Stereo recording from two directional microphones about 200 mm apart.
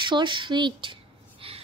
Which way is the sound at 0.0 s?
25° right (ahead or behind).